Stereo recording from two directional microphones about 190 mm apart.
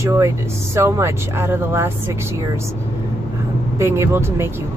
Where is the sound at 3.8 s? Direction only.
15° right (ahead or behind).